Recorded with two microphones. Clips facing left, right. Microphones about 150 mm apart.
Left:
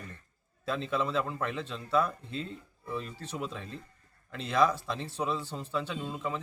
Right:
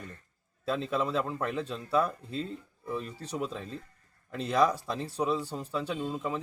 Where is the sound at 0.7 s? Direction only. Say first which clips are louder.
Right 1 dB; 40° right (ahead or behind).